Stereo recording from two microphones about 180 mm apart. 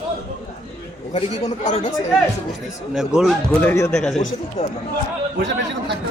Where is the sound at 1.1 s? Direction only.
35° left (ahead or behind).